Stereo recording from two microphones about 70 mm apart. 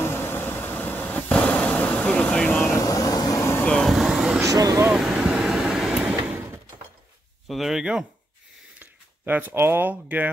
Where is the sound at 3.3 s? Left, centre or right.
Left.